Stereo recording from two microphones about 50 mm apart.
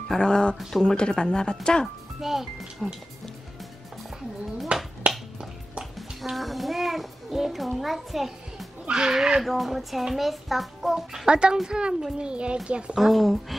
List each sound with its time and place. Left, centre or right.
0.1 s speech: centre
0.6 s a child's voice: centre
0.8 s speech: centre
2.3 s speech: centre
2.8 s speech: centre
4.7 s speech: centre
5.9 s music: centre
8.8 s speech: centre
9.4 s a child's voice: centre
11.2 s speech: centre
12.9 s a child's voice: centre